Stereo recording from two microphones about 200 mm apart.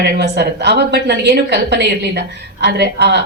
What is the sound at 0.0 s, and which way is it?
A woman's voice, 55° right (ahead or behind).